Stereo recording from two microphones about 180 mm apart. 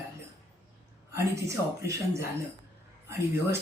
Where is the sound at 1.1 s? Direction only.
15° right (ahead or behind).